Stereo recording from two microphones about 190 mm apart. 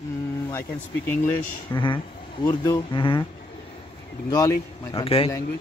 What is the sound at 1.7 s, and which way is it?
Speech, 25° left (ahead or behind).